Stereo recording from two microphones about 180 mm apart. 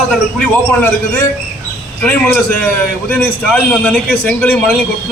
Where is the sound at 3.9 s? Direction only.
10° left (ahead or behind).